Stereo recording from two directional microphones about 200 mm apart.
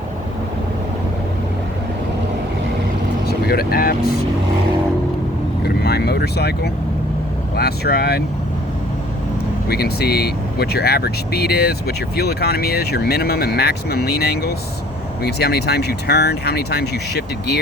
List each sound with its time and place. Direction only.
3.2 s speech: 50° left (ahead or behind)
5.6 s vehicle: 50° left (ahead or behind)
7.5 s speech: 50° left (ahead or behind)
9.6 s speech: 50° left (ahead or behind)